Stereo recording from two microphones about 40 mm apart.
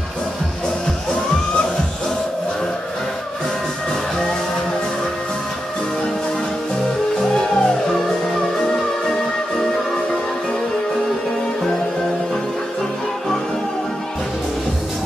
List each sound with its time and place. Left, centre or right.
7.3 s music: centre
8.7 s music: centre
11.6 s music: centre